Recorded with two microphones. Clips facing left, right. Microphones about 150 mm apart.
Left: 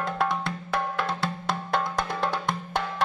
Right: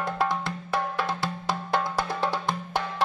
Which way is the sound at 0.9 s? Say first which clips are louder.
Even; 5° right (ahead or behind).